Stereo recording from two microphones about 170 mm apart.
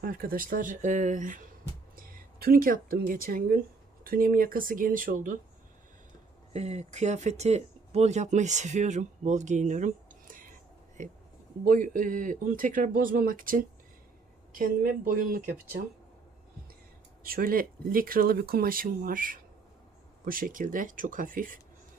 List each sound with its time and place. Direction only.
0.0 s speech: 60° right (ahead or behind)
6.5 s speech: 40° right (ahead or behind)
11.6 s speech: 55° right (ahead or behind)
17.2 s speech: 60° right (ahead or behind)